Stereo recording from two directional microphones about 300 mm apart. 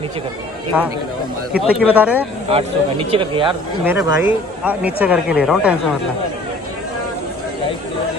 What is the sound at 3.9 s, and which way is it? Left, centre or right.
Speech, centre.